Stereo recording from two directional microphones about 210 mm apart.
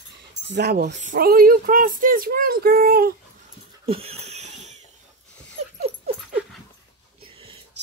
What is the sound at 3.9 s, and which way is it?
Wheeze, 30° right (ahead or behind).